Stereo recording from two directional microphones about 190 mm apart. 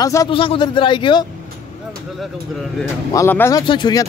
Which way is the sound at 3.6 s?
25° left (ahead or behind).